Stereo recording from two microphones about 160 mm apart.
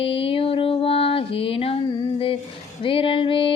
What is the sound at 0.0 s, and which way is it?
Music, 35° left (ahead or behind).